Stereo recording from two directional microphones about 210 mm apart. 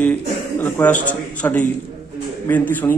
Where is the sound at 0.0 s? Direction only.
10° left (ahead or behind).